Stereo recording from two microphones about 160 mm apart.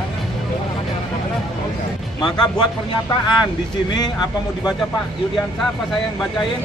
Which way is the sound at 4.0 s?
25° left (ahead or behind).